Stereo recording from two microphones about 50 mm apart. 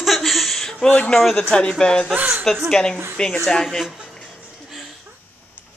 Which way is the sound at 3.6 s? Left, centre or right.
Centre.